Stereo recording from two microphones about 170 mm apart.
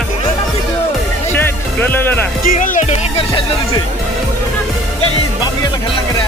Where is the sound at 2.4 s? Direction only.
55° left (ahead or behind); by 3.4 s 35° left (ahead or behind).